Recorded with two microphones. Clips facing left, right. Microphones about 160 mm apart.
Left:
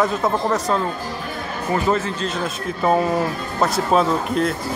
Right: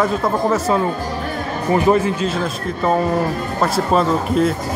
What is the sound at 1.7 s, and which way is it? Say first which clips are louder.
Speech: right 5 dB; 15° right (ahead or behind).